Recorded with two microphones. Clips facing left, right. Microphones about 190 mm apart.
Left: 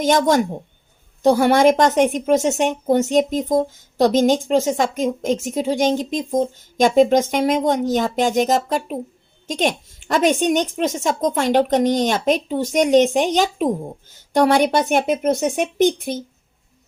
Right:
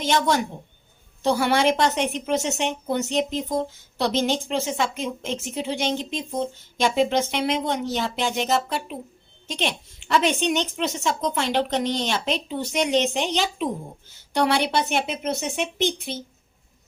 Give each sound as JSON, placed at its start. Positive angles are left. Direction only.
{"t": 0.0, "sound": "a woman's voice", "side_deg": 45}